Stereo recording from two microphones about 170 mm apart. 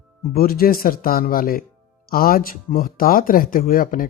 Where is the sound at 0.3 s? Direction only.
60° left (ahead or behind).